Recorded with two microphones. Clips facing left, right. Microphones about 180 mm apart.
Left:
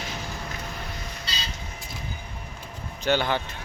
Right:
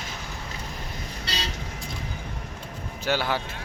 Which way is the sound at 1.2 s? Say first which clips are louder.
Right 7 dB; 70° right (ahead or behind).